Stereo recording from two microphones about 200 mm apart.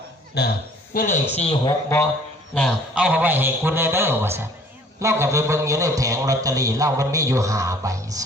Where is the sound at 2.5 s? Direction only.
Centre (ahead or behind).